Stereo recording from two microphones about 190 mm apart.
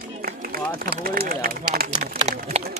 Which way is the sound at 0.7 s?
50° right (ahead or behind).